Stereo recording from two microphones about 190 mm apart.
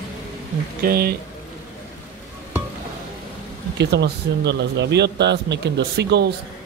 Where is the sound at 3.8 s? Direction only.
60° right (ahead or behind).